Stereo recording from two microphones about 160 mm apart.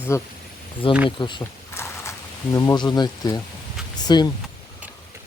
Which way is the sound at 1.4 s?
15° left (ahead or behind).